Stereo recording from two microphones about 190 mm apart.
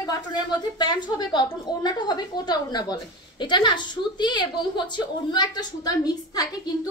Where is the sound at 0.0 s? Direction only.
25° left (ahead or behind).